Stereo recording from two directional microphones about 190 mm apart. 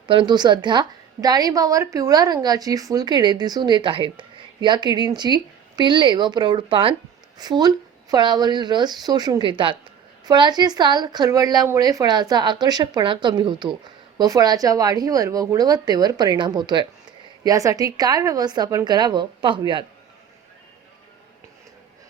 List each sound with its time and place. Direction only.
0.1 s a woman's voice: 25° right (ahead or behind)